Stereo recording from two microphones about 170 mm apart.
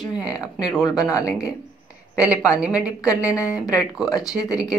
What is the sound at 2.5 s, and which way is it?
Speech, 5° right (ahead or behind).